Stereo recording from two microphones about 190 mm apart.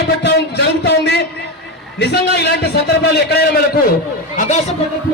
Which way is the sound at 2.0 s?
60° left (ahead or behind).